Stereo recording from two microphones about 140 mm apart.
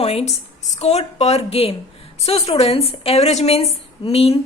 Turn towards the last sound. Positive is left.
turn(degrees=45)  # may be behind; listen again after turning